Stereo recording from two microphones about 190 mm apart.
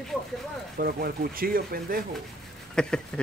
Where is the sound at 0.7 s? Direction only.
50° right (ahead or behind).